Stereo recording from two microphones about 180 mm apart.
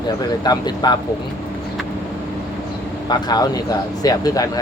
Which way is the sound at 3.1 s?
25° left (ahead or behind).